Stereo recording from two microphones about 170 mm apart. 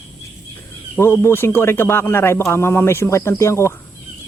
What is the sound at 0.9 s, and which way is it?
Speech, 15° left (ahead or behind).